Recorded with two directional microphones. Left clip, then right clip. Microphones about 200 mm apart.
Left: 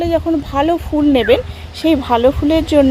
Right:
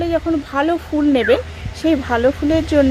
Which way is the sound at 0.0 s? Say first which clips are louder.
Left 3 dB; 10° left (ahead or behind).